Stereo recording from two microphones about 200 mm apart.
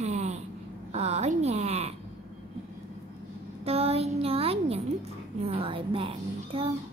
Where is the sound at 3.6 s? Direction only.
30° right (ahead or behind).